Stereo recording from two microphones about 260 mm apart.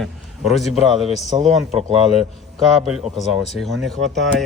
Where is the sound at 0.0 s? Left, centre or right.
Centre.